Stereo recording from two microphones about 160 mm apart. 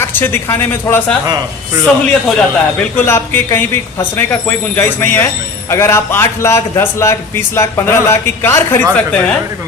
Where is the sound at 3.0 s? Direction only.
15° left (ahead or behind).